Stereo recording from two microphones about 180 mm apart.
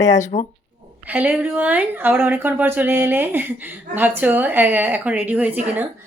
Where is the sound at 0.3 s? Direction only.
35° left (ahead or behind).